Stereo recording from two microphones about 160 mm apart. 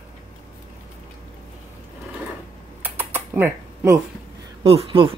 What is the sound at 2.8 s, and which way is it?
Typing, 10° right (ahead or behind).